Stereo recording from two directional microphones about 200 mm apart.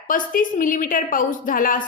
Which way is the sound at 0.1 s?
40° left (ahead or behind).